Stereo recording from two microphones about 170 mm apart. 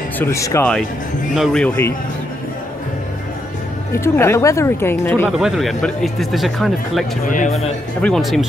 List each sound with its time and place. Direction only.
0.2 s speech: 15° left (ahead or behind)
1.3 s speech: centre (ahead or behind)
3.9 s speech: 15° left (ahead or behind)
5.4 s speech: centre (ahead or behind)
7.2 s speech: 50° left (ahead or behind)
7.5 s speech: centre (ahead or behind)